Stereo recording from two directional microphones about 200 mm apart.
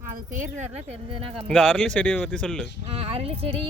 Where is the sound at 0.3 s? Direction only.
40° right (ahead or behind).